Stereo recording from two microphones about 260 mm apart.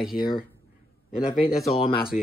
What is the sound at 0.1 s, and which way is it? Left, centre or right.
Speech, left.